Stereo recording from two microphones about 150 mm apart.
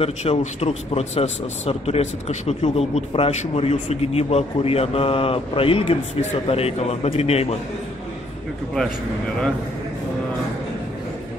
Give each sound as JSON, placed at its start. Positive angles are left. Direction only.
{"t": 0.0, "sound": "a man's voice", "side_deg": 45}